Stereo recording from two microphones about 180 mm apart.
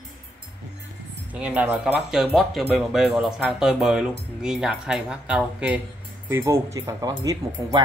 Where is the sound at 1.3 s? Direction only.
10° right (ahead or behind).